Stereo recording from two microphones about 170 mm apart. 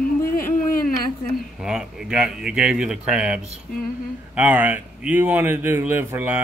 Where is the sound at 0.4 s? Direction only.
55° left (ahead or behind).